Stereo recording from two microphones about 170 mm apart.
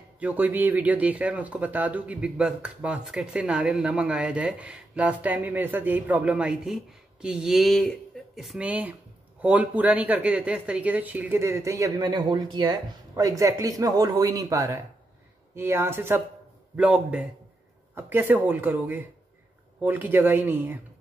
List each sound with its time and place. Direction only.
0.2 s speech: 10° right (ahead or behind)